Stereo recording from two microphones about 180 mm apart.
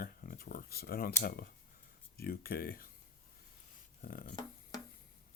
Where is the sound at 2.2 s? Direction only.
55° left (ahead or behind).